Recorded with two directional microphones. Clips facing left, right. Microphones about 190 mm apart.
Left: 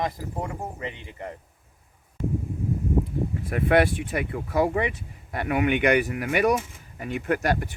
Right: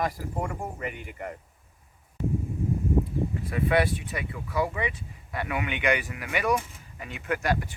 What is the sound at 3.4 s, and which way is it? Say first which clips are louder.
Speech: left 4 dB; 50° left (ahead or behind).